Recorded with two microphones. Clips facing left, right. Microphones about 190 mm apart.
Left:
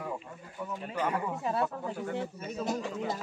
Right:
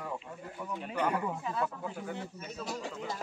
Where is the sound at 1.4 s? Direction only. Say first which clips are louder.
Left 4 dB; 65° left (ahead or behind).